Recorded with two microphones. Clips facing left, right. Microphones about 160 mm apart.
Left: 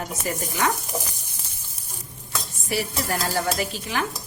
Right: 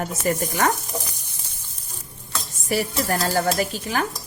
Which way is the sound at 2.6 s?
45° right (ahead or behind).